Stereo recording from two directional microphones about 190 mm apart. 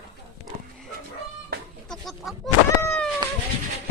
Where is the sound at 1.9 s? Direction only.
Centre (ahead or behind).